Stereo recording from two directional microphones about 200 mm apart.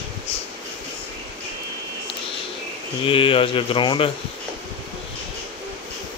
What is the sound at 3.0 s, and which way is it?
Speech, 25° left (ahead or behind).